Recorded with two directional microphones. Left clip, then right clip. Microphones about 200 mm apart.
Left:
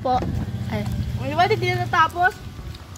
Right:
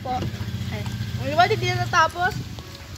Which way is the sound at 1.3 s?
35° left (ahead or behind).